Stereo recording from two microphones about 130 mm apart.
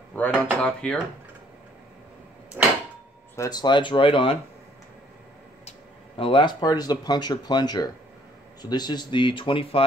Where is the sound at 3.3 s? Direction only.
30° left (ahead or behind).